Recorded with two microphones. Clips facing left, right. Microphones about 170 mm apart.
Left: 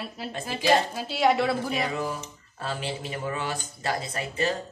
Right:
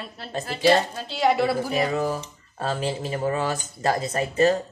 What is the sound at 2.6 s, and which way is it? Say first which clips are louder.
Speech: right 5 dB; 40° right (ahead or behind).